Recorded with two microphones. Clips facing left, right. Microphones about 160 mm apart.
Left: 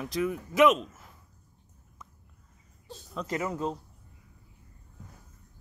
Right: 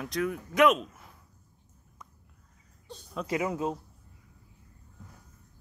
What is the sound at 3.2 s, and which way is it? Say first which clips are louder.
Speech: right 2 dB; 10° right (ahead or behind).